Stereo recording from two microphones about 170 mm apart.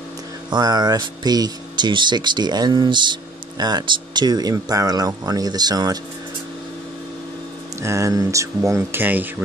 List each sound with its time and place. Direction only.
0.5 s speech: 25° right (ahead or behind)
7.8 s speech: 15° right (ahead or behind)